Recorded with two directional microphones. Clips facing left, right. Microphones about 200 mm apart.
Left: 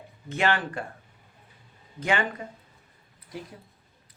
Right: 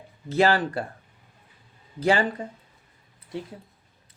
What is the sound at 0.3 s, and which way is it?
Speech, 35° right (ahead or behind).